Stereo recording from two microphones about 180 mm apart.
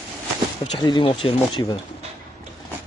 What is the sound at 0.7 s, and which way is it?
Speech, 25° left (ahead or behind).